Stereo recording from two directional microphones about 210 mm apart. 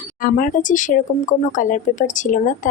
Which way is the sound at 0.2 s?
40° left (ahead or behind).